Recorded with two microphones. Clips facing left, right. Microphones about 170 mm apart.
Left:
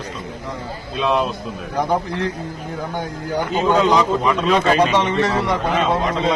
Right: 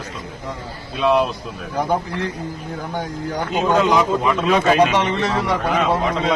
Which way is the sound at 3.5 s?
5° right (ahead or behind).